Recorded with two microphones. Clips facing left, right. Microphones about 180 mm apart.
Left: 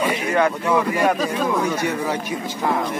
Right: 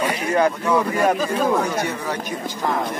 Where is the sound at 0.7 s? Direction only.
10° left (ahead or behind).